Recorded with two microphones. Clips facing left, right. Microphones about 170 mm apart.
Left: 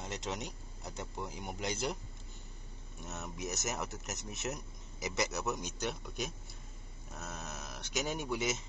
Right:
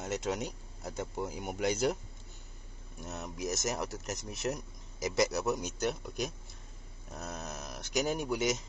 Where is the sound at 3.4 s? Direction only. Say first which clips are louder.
Right 5 dB; 40° right (ahead or behind).